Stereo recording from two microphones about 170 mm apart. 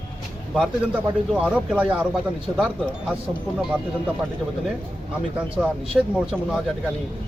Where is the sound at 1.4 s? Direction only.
10° right (ahead or behind).